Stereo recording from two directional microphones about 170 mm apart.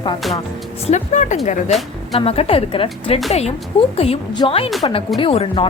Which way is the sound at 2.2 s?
35° left (ahead or behind).